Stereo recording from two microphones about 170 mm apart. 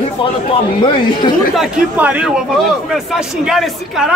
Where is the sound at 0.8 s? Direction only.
30° left (ahead or behind).